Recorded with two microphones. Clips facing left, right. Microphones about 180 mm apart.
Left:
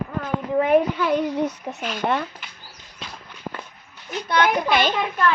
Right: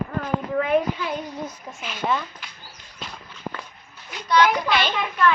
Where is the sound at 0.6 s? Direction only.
50° left (ahead or behind); by 1.8 s 70° left (ahead or behind).